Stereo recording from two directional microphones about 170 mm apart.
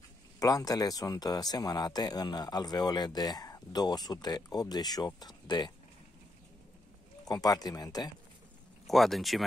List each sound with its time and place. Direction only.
0.4 s speech: 20° left (ahead or behind)
7.2 s speech: 20° left (ahead or behind)
8.8 s speech: centre (ahead or behind)